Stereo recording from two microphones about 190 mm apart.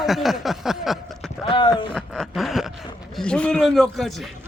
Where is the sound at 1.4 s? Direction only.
25° left (ahead or behind).